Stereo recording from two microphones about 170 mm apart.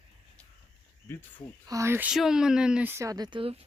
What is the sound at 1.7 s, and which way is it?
Speech, 15° right (ahead or behind).